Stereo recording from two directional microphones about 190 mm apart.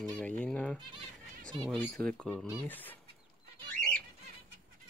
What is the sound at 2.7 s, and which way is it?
Fowl, 10° left (ahead or behind).